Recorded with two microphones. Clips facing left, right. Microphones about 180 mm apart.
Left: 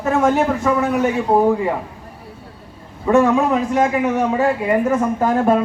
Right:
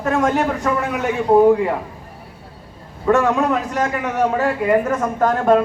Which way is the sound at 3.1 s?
10° left (ahead or behind).